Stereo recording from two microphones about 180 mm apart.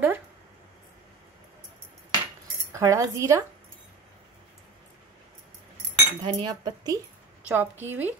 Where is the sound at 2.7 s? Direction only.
15° right (ahead or behind).